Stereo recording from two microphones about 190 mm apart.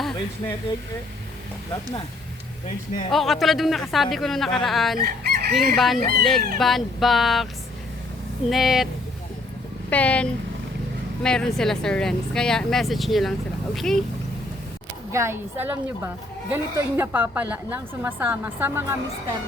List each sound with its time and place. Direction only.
3.1 s speech: centre (ahead or behind)
4.9 s chicken: 50° right (ahead or behind)
5.5 s speech: centre (ahead or behind)
8.4 s speech: centre (ahead or behind)
9.9 s speech: 5° left (ahead or behind)
15.1 s a woman's voice: 15° right (ahead or behind)